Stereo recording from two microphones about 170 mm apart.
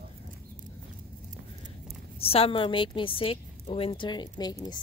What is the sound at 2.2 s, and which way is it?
A woman's voice, 35° left (ahead or behind).